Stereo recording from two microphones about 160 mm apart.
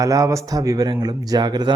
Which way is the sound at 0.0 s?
20° right (ahead or behind).